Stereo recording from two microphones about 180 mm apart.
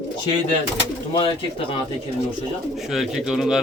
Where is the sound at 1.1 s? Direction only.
30° left (ahead or behind).